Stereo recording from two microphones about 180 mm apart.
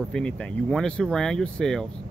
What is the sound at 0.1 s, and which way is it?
Speech, 5° left (ahead or behind).